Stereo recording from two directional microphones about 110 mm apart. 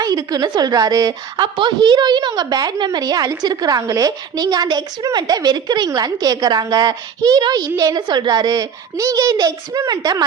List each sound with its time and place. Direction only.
0.0 s a woman's voice: 35° right (ahead or behind)